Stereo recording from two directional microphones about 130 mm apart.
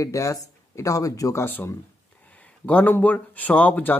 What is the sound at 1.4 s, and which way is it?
Speech, 15° left (ahead or behind).